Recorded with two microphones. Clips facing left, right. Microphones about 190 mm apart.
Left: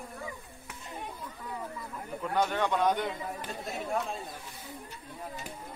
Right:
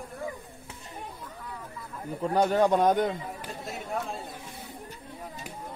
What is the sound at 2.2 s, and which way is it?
Speech, 35° right (ahead or behind).